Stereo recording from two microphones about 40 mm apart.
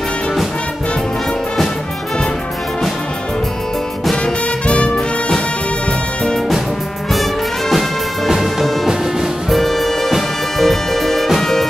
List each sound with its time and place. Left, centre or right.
4.6 s music: left
9.5 s music: centre